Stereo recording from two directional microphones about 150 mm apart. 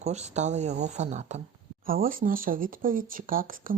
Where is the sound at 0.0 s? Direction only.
50° right (ahead or behind).